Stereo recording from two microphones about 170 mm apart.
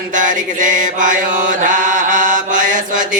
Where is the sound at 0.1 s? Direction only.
50° right (ahead or behind).